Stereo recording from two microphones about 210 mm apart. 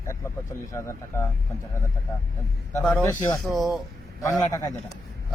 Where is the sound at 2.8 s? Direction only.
5° left (ahead or behind).